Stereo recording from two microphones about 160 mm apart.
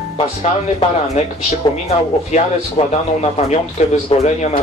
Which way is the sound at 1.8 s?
40° left (ahead or behind).